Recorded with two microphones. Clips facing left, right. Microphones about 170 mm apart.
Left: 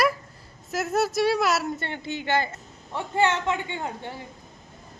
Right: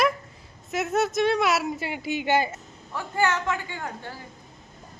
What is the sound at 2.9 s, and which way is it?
A woman's voice, 25° left (ahead or behind).